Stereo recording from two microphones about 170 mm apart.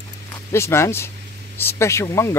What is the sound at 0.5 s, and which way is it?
Speech, 15° left (ahead or behind).